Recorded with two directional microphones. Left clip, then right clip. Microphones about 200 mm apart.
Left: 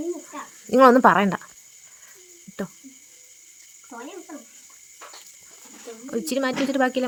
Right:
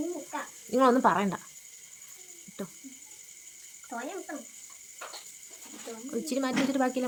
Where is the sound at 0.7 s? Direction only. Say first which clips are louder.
Left 9 dB; 35° left (ahead or behind).